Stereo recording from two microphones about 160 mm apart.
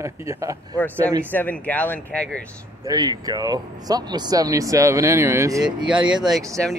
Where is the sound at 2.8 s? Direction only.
25° right (ahead or behind).